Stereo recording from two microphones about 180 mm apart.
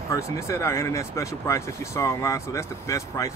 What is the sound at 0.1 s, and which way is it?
Speech, 15° left (ahead or behind).